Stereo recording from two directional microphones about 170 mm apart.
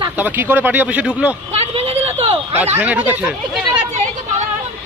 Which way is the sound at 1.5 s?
35° right (ahead or behind).